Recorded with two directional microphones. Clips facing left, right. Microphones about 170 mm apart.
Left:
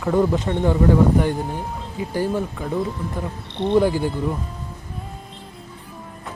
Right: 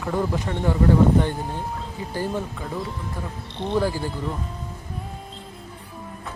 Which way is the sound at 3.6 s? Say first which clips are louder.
Left 6 dB; 20° left (ahead or behind).